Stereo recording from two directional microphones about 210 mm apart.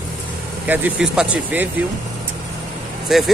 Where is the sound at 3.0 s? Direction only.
Centre (ahead or behind).